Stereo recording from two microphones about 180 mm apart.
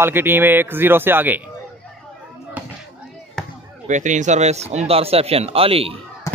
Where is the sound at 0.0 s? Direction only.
10° right (ahead or behind).